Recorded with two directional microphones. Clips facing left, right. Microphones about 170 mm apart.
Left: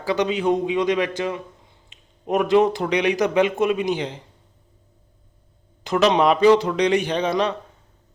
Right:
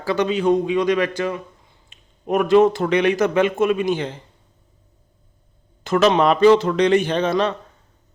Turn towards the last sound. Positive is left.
turn(degrees=15)  # may be behind; listen again after turning